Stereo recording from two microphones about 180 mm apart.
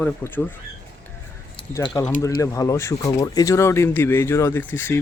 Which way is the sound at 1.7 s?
20° left (ahead or behind).